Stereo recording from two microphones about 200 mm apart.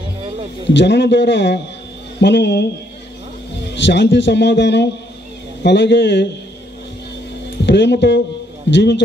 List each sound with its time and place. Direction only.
0.7 s a man's voice: 60° left (ahead or behind)
3.7 s a man's voice: 60° left (ahead or behind)
7.6 s a man's voice: 60° left (ahead or behind)